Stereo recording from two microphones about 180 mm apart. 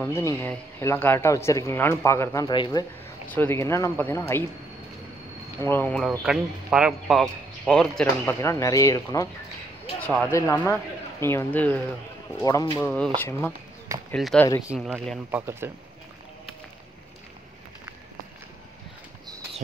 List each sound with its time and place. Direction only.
0.0 s speech: 15° left (ahead or behind)
3.3 s speech: 15° left (ahead or behind)
5.6 s speech: 10° left (ahead or behind)
6.0 s speech: 5° right (ahead or behind); by 9.3 s 20° left (ahead or behind)
9.9 s speech: 10° left (ahead or behind)
15.3 s speech: 15° right (ahead or behind)